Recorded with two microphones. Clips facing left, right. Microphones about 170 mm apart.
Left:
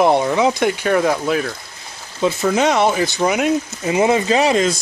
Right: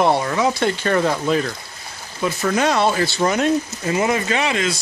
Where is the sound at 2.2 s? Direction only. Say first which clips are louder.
Left 3 dB; 25° left (ahead or behind).